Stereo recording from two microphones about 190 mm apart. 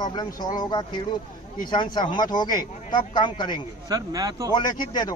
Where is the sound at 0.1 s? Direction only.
20° left (ahead or behind).